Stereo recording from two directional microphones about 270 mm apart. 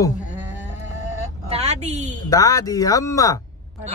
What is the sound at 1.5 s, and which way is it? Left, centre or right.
Speech, right.